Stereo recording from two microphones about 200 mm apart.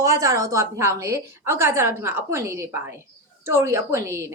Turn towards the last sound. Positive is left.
turn(degrees=-15)  # may be behind; listen again after turning